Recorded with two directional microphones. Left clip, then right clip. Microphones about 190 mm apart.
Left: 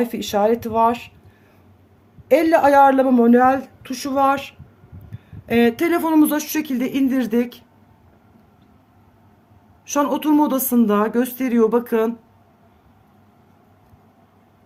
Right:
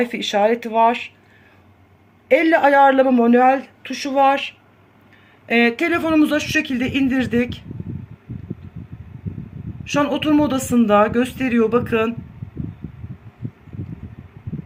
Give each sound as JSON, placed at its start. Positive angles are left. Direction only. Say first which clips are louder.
{"t": 0.0, "sound": "speech", "louder": "right 1 dB", "side_deg": 10}
{"t": 2.2, "sound": "speech", "louder": "even", "side_deg": 5}
{"t": 9.8, "sound": "speech", "louder": "even", "side_deg": 10}